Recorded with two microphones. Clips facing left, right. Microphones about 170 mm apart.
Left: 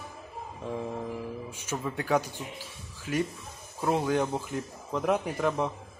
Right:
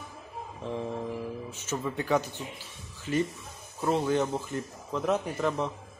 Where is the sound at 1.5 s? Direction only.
10° left (ahead or behind).